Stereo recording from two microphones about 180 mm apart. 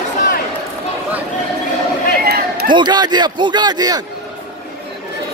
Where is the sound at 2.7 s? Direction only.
25° right (ahead or behind).